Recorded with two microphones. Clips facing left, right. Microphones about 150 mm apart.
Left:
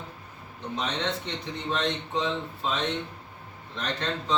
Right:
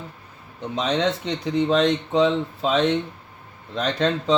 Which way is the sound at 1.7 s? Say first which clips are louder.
Right 7 dB; 90° right.